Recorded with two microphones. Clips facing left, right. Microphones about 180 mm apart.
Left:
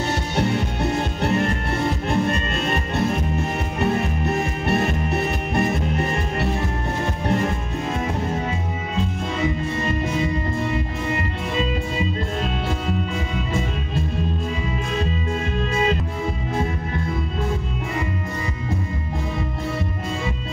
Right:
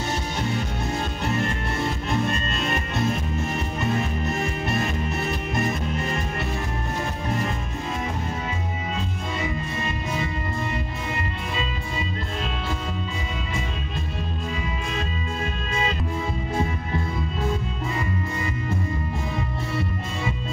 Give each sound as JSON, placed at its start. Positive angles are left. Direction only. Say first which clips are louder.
{"t": 0.4, "sound": "music", "louder": "left 5 dB", "side_deg": 65}